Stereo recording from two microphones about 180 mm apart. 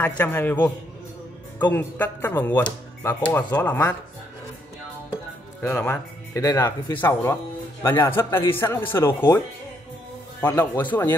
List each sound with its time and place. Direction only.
0.0 s speech: 10° left (ahead or behind)
5.6 s speech: 15° left (ahead or behind)
10.4 s speech: 20° left (ahead or behind)